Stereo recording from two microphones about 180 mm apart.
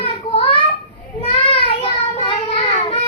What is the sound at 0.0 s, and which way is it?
Child singing, 35° left (ahead or behind).